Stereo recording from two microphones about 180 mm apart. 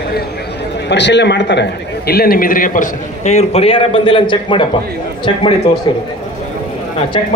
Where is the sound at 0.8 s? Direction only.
75° left (ahead or behind); by 4.6 s 25° left (ahead or behind).